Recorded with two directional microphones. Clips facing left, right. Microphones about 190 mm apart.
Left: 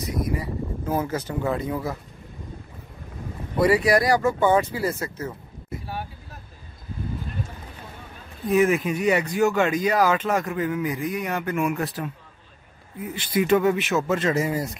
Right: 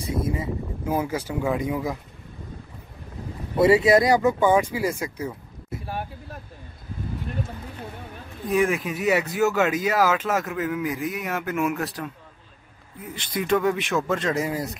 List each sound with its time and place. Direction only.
0.0 s a sound: 25° right (ahead or behind)
0.8 s speech: 10° right (ahead or behind)
3.5 s speech: 25° right (ahead or behind)
8.5 s speech: centre (ahead or behind)